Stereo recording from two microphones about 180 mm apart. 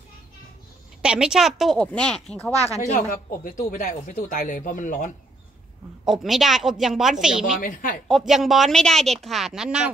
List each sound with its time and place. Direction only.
1.0 s a woman's voice: 5° right (ahead or behind)
2.6 s speech: 35° left (ahead or behind)
6.0 s a woman's voice: centre (ahead or behind)
7.6 s speech: 45° left (ahead or behind)
8.1 s a woman's voice: centre (ahead or behind)